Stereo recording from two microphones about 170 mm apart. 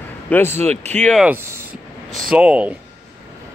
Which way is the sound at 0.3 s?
15° left (ahead or behind).